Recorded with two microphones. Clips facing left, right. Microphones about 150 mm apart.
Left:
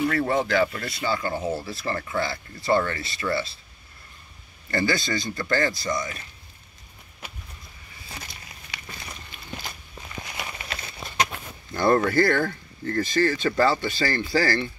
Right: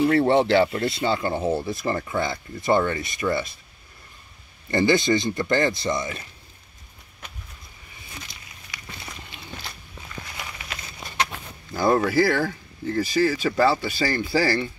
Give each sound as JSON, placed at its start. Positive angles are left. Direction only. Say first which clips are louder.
{"t": 0.0, "sound": "speech", "louder": "right 5 dB", "side_deg": -30}
{"t": 4.6, "sound": "speech", "louder": "right 6 dB", "side_deg": -20}
{"t": 11.7, "sound": "speech", "louder": "even", "side_deg": -5}